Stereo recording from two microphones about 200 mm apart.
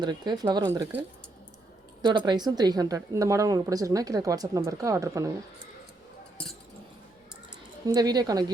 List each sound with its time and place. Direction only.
0.0 s speech: 20° right (ahead or behind)
7.9 s speech: 20° right (ahead or behind)